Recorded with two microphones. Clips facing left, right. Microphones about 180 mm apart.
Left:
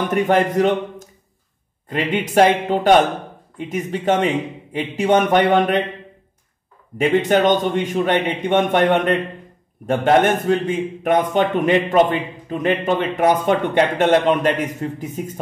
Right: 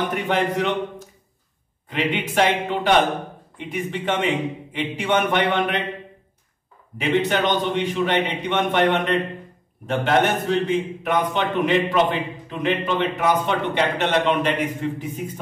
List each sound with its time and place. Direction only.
0.1 s a man's voice: 45° left (ahead or behind)
7.0 s speech: 45° left (ahead or behind)